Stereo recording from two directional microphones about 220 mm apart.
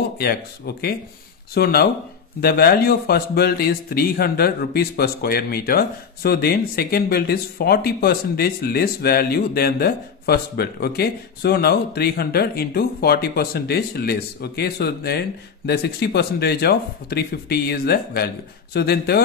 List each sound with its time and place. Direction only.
0.2 s a man's voice: 45° left (ahead or behind)